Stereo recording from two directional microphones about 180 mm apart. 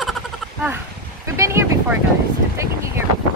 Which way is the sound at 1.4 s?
15° right (ahead or behind).